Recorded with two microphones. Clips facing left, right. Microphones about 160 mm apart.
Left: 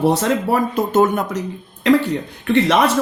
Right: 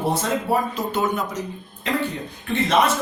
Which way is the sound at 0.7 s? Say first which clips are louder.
Left 8 dB; 50° left (ahead or behind).